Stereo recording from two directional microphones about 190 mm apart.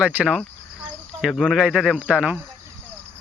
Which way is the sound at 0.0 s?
5° right (ahead or behind).